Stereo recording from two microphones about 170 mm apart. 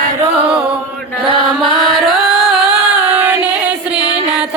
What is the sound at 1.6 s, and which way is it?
Music, centre (ahead or behind).